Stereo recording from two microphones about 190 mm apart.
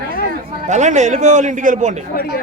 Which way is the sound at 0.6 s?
40° right (ahead or behind).